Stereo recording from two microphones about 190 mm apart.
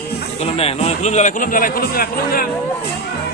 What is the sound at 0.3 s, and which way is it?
A man's voice, 35° left (ahead or behind).